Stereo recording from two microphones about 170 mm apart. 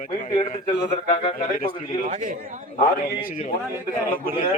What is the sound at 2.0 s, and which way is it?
Speech, 50° right (ahead or behind).